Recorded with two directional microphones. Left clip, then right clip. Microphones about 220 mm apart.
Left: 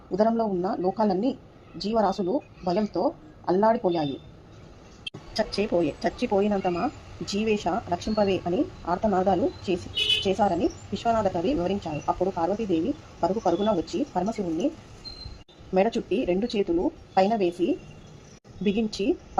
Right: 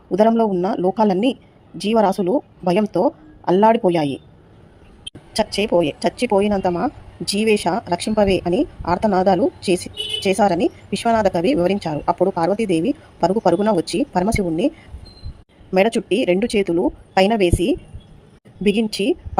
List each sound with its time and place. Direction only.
0.1 s speech: 25° right (ahead or behind)
5.3 s speech: 15° right (ahead or behind)
15.7 s speech: 20° right (ahead or behind)